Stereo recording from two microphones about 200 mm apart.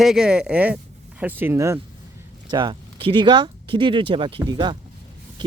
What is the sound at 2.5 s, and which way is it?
Speech, 25° right (ahead or behind).